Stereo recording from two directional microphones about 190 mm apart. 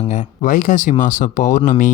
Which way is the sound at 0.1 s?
45° left (ahead or behind).